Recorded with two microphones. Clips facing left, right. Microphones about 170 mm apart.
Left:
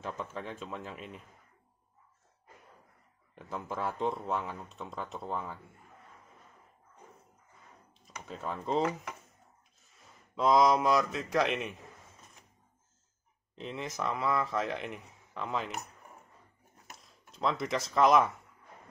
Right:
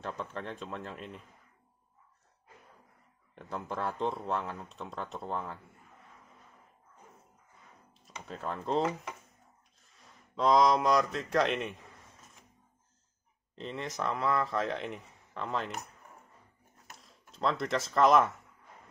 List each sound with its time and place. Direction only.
0.0 s speech: centre (ahead or behind)
3.3 s speech: centre (ahead or behind)
8.0 s speech: centre (ahead or behind)
9.8 s speech: centre (ahead or behind)
13.6 s speech: centre (ahead or behind)
16.9 s speech: centre (ahead or behind)